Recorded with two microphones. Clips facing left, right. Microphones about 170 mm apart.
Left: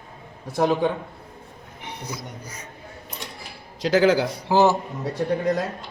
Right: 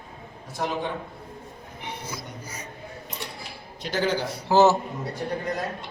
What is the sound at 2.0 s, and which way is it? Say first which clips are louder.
Music: left 2 dB; 10° right (ahead or behind).